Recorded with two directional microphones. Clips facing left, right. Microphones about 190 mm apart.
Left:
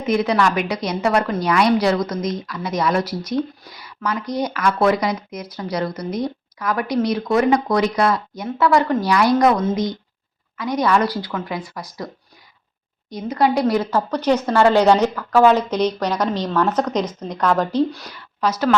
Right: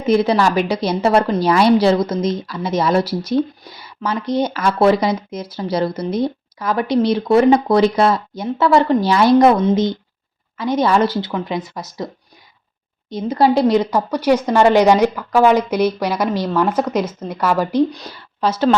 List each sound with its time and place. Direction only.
0.0 s a woman's voice: 30° right (ahead or behind)
13.1 s speech: 25° right (ahead or behind)
18.0 s a woman's voice: 30° right (ahead or behind)